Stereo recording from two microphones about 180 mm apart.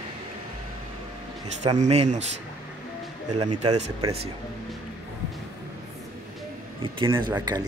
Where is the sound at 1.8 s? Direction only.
40° right (ahead or behind).